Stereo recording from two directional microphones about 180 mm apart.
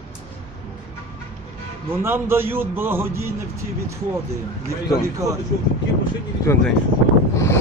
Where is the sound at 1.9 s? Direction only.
15° right (ahead or behind).